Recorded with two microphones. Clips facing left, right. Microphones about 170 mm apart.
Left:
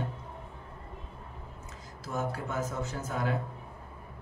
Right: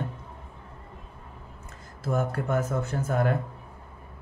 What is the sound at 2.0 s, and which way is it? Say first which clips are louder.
Speech: right 6 dB; 55° right (ahead or behind).